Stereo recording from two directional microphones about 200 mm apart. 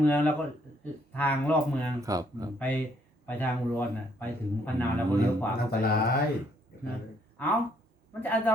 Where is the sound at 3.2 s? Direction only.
10° left (ahead or behind).